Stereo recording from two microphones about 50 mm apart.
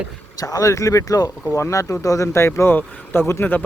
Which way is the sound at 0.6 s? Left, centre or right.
Left.